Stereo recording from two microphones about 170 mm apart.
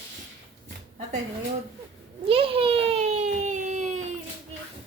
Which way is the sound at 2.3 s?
35° right (ahead or behind).